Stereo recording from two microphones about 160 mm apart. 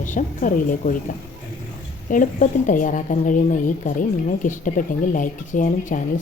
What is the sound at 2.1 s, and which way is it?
Speech, 55° left (ahead or behind).